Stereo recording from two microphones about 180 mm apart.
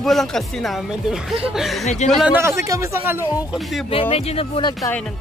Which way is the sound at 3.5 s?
Centre (ahead or behind).